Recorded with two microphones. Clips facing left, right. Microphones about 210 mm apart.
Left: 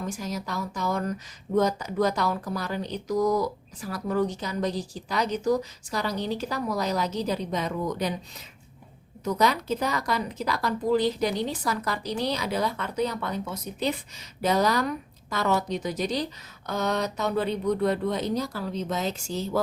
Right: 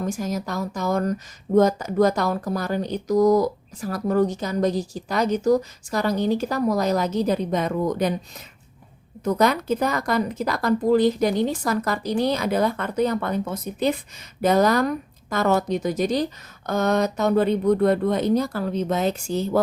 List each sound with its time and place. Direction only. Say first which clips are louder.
0.0 s speech: right 6 dB; 50° right (ahead or behind)
9.2 s speech: right 4 dB; 55° right (ahead or behind)